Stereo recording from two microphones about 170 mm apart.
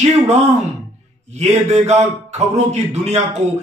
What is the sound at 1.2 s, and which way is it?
Speech, 40° right (ahead or behind).